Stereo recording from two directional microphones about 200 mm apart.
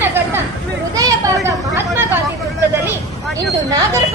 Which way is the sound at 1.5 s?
15° right (ahead or behind).